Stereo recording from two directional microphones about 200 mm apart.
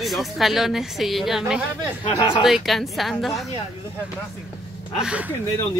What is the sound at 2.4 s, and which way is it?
A woman's voice, centre (ahead or behind).